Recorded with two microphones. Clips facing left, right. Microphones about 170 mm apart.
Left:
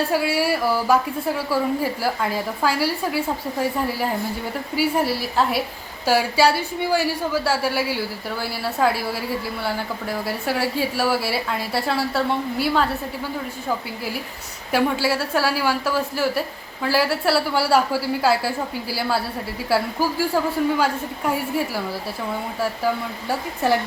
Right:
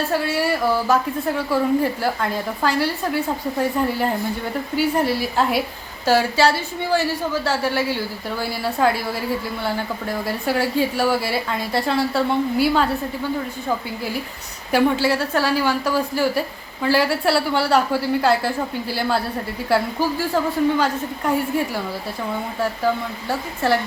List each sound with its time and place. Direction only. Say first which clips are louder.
0.1 s a woman's voice: even; 10° left (ahead or behind)
14.7 s a woman's voice: right 3 dB; centre (ahead or behind)